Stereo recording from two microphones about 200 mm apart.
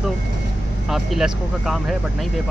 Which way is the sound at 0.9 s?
Centre (ahead or behind).